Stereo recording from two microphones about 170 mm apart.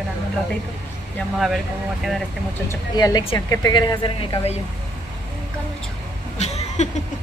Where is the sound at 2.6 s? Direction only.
20° left (ahead or behind).